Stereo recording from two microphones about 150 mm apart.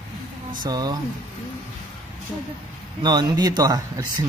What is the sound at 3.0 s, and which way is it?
Speech, 25° right (ahead or behind).